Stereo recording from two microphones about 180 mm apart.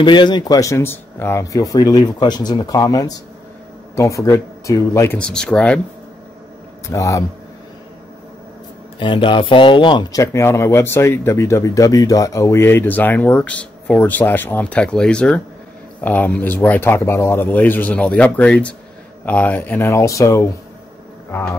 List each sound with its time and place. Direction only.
0.0 s speech: 25° left (ahead or behind); by 5.8 s 5° left (ahead or behind)
6.9 s speech: 20° left (ahead or behind)
9.0 s speech: 25° left (ahead or behind)